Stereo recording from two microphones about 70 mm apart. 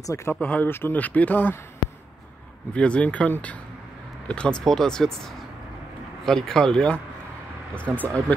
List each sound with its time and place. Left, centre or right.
0.0 s speech: left
0.4 s speech: centre
0.7 s speech: left
0.9 s speech: left
2.7 s speech: centre
7.9 s speech: centre